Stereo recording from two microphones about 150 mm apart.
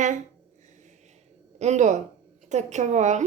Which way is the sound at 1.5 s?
50° right (ahead or behind).